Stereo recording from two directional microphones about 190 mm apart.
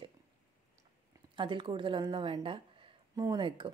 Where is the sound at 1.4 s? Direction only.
25° right (ahead or behind).